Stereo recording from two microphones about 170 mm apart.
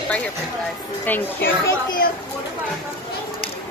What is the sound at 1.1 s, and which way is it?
Speech, 10° left (ahead or behind).